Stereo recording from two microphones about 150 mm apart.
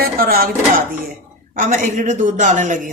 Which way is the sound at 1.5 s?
60° right (ahead or behind).